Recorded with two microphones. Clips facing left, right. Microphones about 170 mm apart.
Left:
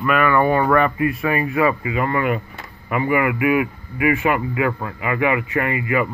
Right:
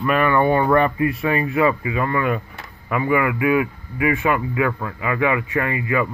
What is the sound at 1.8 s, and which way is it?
A man's voice, 20° left (ahead or behind).